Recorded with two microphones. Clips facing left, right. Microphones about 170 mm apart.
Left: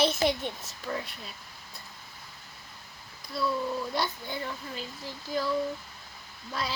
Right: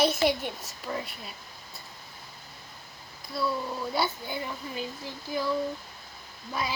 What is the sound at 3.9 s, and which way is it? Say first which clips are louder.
Speech: right 2 dB; 5° right (ahead or behind).